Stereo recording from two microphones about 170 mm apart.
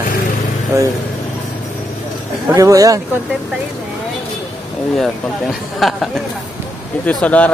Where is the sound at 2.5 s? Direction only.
20° right (ahead or behind).